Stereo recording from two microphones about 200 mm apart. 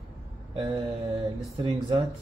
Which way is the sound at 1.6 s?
25° right (ahead or behind).